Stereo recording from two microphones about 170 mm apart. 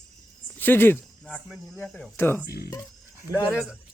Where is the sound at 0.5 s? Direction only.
10° left (ahead or behind).